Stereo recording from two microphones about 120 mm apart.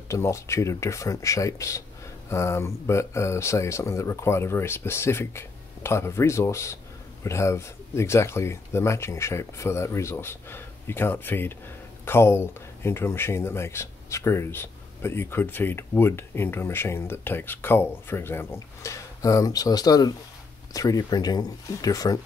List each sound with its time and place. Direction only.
0.1 s speech: 25° left (ahead or behind)